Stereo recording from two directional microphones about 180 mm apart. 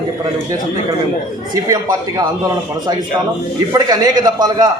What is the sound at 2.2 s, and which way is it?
A man's voice, 25° right (ahead or behind).